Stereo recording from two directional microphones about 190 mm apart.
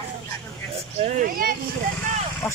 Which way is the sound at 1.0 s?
40° right (ahead or behind).